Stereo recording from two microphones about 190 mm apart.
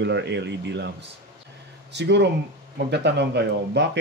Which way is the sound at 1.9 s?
65° right (ahead or behind).